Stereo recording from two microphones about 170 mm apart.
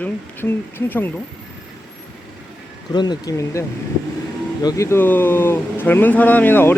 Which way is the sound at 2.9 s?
25° left (ahead or behind).